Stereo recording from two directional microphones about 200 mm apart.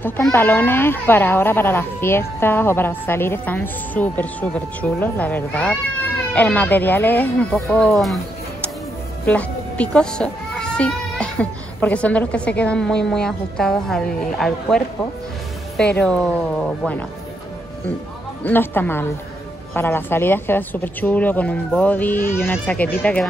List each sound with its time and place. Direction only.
0.0 s speech: 10° left (ahead or behind)
9.2 s speech: 5° left (ahead or behind)
15.9 s speech: 5° left (ahead or behind)
18.4 s speech: 10° left (ahead or behind)